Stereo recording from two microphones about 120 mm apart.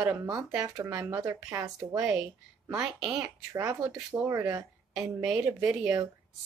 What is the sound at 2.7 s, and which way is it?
Speech, 5° right (ahead or behind).